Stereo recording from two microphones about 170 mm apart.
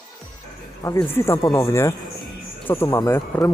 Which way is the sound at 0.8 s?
15° left (ahead or behind).